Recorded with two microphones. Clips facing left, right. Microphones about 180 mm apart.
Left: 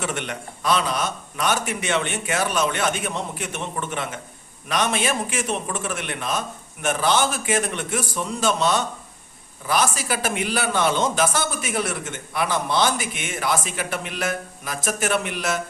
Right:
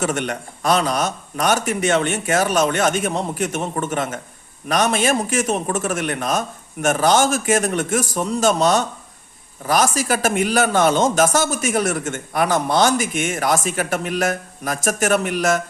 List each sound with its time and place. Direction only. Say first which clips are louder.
0.0 s a man's voice: right 6 dB; 45° right (ahead or behind)